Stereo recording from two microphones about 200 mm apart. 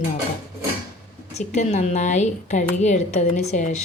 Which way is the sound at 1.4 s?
35° left (ahead or behind).